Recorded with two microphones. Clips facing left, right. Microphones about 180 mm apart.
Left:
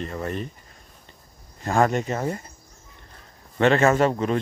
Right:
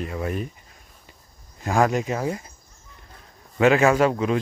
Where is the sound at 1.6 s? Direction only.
Centre (ahead or behind).